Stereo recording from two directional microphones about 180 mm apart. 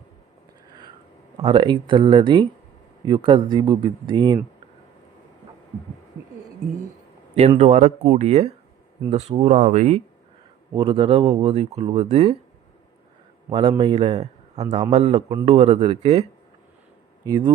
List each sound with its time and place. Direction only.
1.4 s a man's voice: 30° right (ahead or behind)
7.3 s speech: 35° right (ahead or behind)
10.8 s a man's voice: 25° right (ahead or behind)
11.4 s speech: 35° right (ahead or behind)
13.5 s a man's voice: 25° right (ahead or behind)
17.2 s a man's voice: 20° right (ahead or behind)